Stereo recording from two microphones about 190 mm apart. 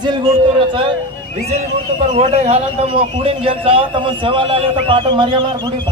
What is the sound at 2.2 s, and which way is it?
A man's voice, 35° right (ahead or behind).